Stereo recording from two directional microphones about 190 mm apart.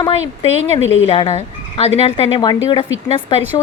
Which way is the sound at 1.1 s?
30° left (ahead or behind).